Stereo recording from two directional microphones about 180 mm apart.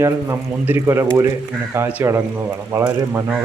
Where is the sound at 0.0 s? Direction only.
10° right (ahead or behind).